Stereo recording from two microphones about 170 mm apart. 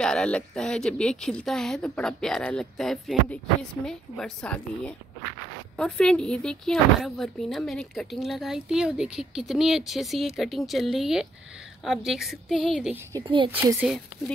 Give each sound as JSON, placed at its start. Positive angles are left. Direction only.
{"t": 0.0, "sound": "speech", "side_deg": 5}
{"t": 13.2, "sound": "a woman's voice", "side_deg": -30}
{"t": 13.5, "sound": "a woman's voice", "side_deg": -10}
{"t": 13.8, "sound": "speech", "side_deg": 0}